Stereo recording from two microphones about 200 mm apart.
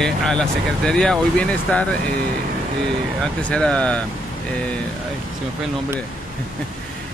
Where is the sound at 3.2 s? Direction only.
5° left (ahead or behind).